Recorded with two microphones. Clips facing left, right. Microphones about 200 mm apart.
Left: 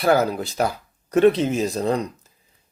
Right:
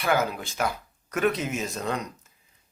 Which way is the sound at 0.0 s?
35° left (ahead or behind).